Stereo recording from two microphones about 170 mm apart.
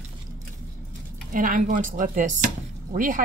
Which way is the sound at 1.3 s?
55° right (ahead or behind).